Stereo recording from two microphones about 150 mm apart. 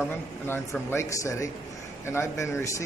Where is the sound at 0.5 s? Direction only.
15° left (ahead or behind).